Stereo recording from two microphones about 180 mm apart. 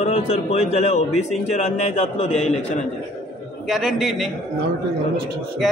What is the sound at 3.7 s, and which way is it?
Speech, centre (ahead or behind).